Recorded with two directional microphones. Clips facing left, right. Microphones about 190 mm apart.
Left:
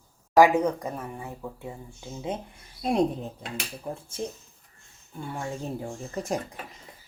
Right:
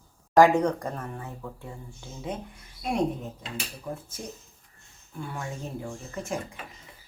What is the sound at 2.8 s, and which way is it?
Speech, 30° left (ahead or behind).